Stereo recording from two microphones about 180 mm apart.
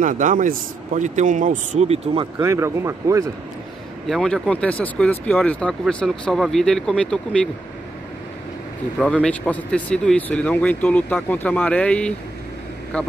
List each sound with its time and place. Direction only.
0.0 s speech: 45° right (ahead or behind)
2.3 s speech: 15° right (ahead or behind)
4.1 s speech: 5° left (ahead or behind)
9.0 s speech: 5° left (ahead or behind)